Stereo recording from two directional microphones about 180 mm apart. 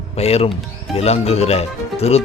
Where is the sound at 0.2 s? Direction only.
35° left (ahead or behind).